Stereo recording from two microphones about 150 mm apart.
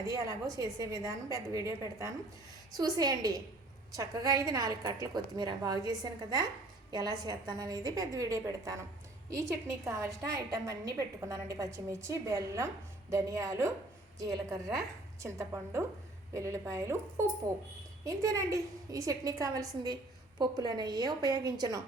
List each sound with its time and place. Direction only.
0.0 s a woman's voice: 20° right (ahead or behind)